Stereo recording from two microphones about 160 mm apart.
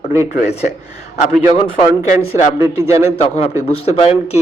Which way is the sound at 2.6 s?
20° right (ahead or behind).